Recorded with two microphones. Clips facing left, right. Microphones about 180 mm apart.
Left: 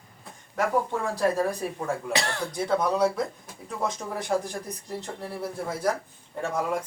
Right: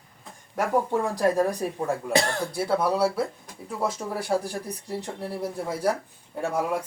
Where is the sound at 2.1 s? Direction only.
45° right (ahead or behind).